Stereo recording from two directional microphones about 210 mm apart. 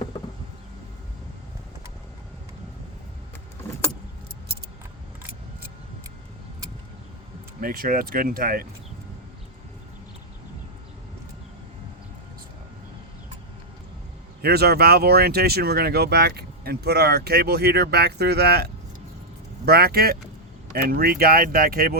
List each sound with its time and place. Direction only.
7.6 s speech: 45° right (ahead or behind)
14.4 s speech: 50° right (ahead or behind)